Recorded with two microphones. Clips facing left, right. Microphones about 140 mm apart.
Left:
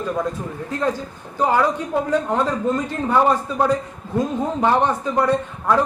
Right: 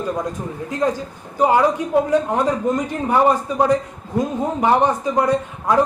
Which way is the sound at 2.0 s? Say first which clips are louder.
Right 2 dB; 15° right (ahead or behind).